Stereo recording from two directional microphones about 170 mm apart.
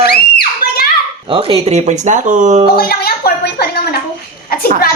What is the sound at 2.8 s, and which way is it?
A woman's voice, 65° left (ahead or behind).